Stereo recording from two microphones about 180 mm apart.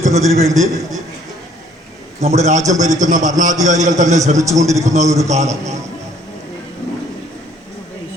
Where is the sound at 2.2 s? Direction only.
40° right (ahead or behind).